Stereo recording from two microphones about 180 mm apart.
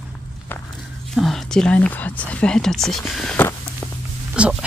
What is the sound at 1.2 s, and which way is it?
Speech, centre (ahead or behind).